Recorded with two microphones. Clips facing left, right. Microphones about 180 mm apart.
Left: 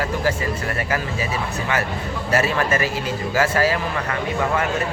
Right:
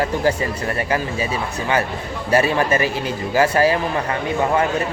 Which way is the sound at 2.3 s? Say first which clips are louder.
Right 3 dB; 30° right (ahead or behind).